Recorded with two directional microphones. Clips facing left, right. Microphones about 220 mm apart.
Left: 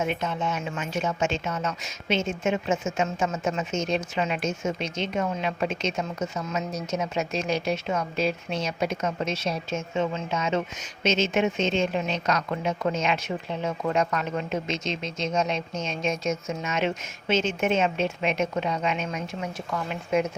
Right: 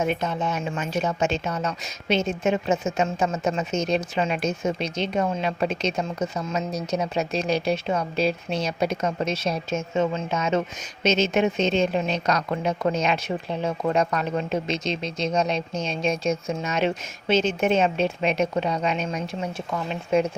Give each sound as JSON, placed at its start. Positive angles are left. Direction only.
{"t": 0.0, "sound": "a woman's voice", "side_deg": -40}